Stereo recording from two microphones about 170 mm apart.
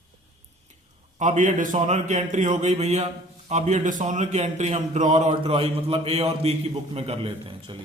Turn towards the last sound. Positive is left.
turn(degrees=-35)  # may be behind; listen again after turning